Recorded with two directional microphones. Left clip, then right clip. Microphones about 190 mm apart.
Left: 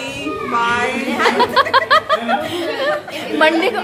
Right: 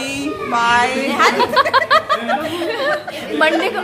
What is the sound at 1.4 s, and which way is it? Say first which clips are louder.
A woman's voice: even; 10° left (ahead or behind).